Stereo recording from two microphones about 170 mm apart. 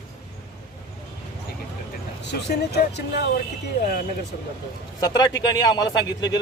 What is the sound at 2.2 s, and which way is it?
Speech, 80° left.